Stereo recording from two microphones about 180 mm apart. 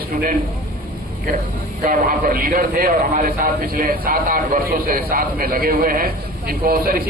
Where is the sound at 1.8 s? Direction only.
50° right (ahead or behind).